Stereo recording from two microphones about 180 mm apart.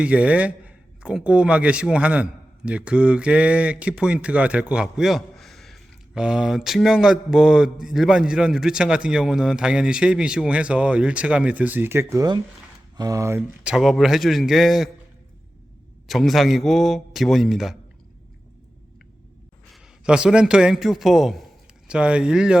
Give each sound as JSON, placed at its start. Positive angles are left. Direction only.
{"t": 0.0, "sound": "speech", "side_deg": -5}
{"t": 13.7, "sound": "speech", "side_deg": 0}
{"t": 16.0, "sound": "speech", "side_deg": 0}
{"t": 19.7, "sound": "a man's voice", "side_deg": -5}